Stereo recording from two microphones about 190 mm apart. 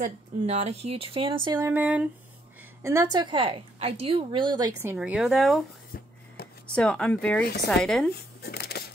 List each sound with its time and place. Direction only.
0.0 s a woman's voice: 35° right (ahead or behind)
1.7 s a woman's voice: 10° right (ahead or behind)
4.9 s speech: 5° right (ahead or behind)
6.7 s speech: 5° left (ahead or behind)
7.4 s speech: 60° left (ahead or behind)
7.7 s speech: 5° left (ahead or behind)
8.1 s a sound: 55° left (ahead or behind)